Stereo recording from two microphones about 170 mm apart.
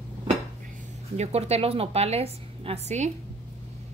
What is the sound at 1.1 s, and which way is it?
A woman's voice, 40° right (ahead or behind).